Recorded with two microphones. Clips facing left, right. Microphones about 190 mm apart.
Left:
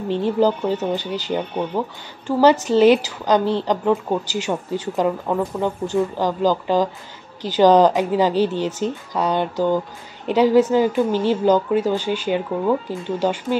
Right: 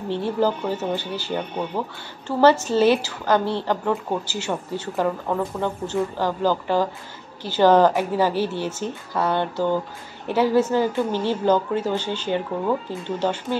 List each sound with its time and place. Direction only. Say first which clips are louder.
0.1 s a woman's voice: left 4 dB; 15° left (ahead or behind)